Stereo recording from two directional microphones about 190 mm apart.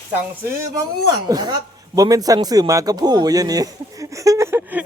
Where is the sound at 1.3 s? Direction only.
20° right (ahead or behind).